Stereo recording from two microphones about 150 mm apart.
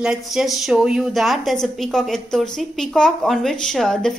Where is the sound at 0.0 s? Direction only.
5° right (ahead or behind).